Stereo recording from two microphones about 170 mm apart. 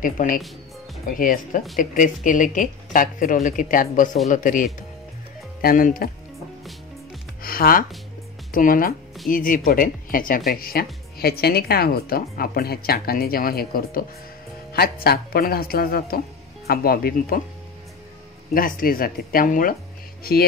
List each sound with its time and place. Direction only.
0.0 s speech: 55° left (ahead or behind)
7.4 s speech: 60° left (ahead or behind)
18.5 s speech: 55° left (ahead or behind)